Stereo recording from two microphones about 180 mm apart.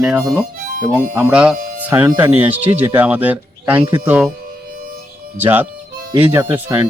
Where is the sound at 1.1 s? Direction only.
10° right (ahead or behind).